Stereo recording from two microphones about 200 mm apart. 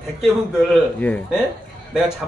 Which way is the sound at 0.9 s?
5° left (ahead or behind).